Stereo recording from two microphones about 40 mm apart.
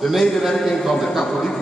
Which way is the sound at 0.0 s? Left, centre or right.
Centre.